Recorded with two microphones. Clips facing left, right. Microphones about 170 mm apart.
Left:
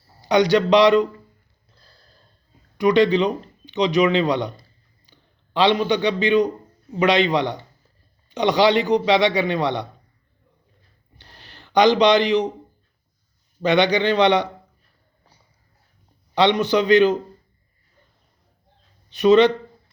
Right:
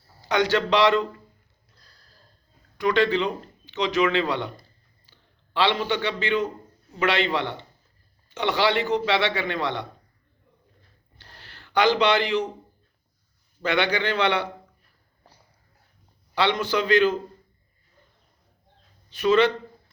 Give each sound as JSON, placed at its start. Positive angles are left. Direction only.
{"t": 0.2, "sound": "speech", "side_deg": 15}
{"t": 1.7, "sound": "a sound", "side_deg": 30}
{"t": 2.7, "sound": "a man's voice", "side_deg": 15}
{"t": 11.2, "sound": "a sound", "side_deg": 15}
{"t": 13.6, "sound": "a man's voice", "side_deg": 20}
{"t": 16.3, "sound": "a man's voice", "side_deg": 20}
{"t": 19.1, "sound": "a man's voice", "side_deg": 20}